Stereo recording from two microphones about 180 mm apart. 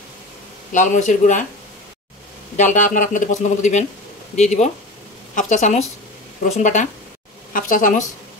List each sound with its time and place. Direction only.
0.7 s speech: 45° left (ahead or behind)
2.5 s a woman's voice: 45° left (ahead or behind)